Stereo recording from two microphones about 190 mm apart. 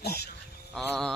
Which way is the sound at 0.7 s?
Centre (ahead or behind).